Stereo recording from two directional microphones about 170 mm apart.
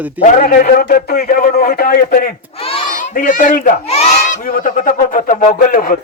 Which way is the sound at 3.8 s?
40° left (ahead or behind).